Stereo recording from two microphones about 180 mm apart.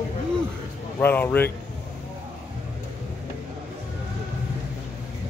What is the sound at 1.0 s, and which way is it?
Speech, 10° left (ahead or behind).